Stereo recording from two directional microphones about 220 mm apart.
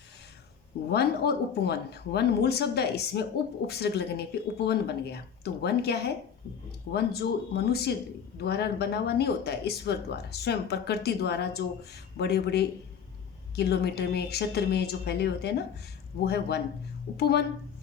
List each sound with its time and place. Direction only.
0.9 s speech: 45° left (ahead or behind)